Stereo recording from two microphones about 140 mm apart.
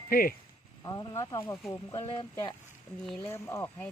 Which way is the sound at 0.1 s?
90° left.